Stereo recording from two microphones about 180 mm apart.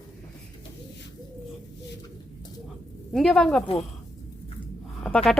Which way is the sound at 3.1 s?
Centre (ahead or behind).